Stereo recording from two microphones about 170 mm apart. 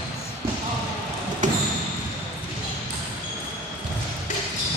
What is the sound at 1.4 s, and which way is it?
Basketball bounce, 50° right (ahead or behind).